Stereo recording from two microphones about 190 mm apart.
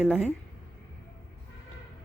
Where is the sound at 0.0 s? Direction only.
5° right (ahead or behind).